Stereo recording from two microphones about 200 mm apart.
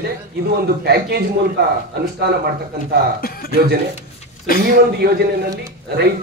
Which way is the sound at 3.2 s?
50° left (ahead or behind).